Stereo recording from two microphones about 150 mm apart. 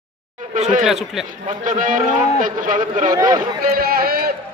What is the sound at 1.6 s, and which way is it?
A man's voice, 65° right (ahead or behind).